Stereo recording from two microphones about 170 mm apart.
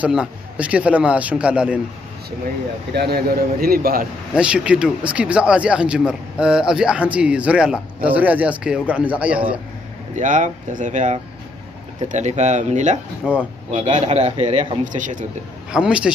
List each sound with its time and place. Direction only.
0.0 s speech: 5° right (ahead or behind)
2.9 s a man's voice: 70° right (ahead or behind)
4.4 s speech: 5° right (ahead or behind)
10.1 s a man's voice: 45° right (ahead or behind)
13.2 s a man's voice: 5° right (ahead or behind)
13.7 s a man's voice: 45° right (ahead or behind)
15.7 s a man's voice: 5° right (ahead or behind)